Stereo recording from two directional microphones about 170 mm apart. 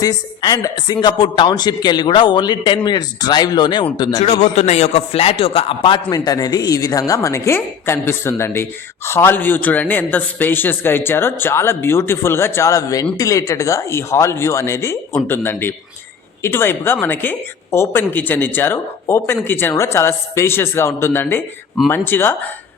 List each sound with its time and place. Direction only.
0.0 s a man's voice: 20° left (ahead or behind)
4.2 s a man's voice: 40° left (ahead or behind); by 22.4 s 15° left (ahead or behind)